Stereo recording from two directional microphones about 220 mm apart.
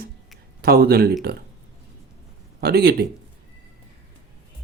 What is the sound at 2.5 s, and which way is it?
Speech, 45° right (ahead or behind).